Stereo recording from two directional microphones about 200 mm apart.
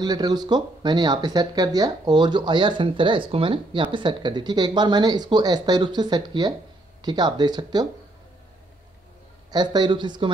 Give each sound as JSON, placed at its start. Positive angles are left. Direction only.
{"t": 0.0, "sound": "speech", "side_deg": -20}
{"t": 9.5, "sound": "speech", "side_deg": -20}